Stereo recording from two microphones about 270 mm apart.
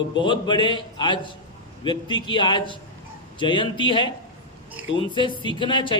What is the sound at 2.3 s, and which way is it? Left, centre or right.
A man's voice, centre.